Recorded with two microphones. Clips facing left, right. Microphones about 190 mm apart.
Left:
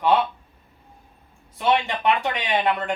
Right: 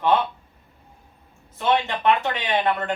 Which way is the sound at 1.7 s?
10° left (ahead or behind).